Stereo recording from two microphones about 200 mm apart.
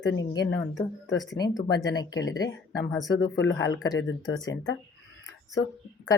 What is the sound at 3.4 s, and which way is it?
Speech, 70° left (ahead or behind).